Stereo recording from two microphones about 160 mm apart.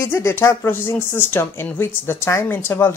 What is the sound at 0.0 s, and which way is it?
Speech, 15° left (ahead or behind).